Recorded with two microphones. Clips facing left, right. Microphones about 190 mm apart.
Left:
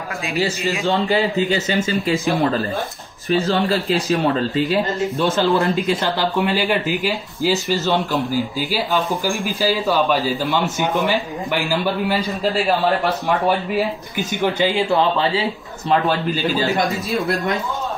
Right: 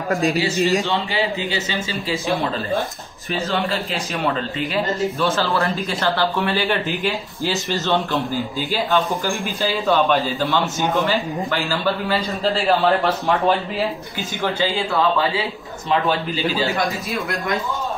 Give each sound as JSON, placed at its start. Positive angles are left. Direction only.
{"t": 0.1, "sound": "speech", "side_deg": -40}
{"t": 0.8, "sound": "a man's voice", "side_deg": 45}
{"t": 3.3, "sound": "a man's voice", "side_deg": 40}
{"t": 5.4, "sound": "a man's voice", "side_deg": 25}
{"t": 14.1, "sound": "speech", "side_deg": 15}